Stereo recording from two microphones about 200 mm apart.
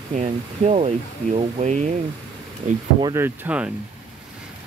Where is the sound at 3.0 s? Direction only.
10° right (ahead or behind).